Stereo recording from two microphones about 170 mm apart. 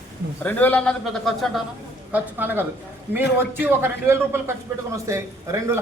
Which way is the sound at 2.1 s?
10° right (ahead or behind).